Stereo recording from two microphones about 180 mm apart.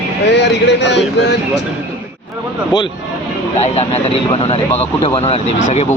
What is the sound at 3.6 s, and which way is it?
Speech, 35° left (ahead or behind).